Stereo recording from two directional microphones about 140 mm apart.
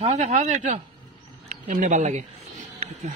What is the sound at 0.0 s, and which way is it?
Speech, 55° right (ahead or behind).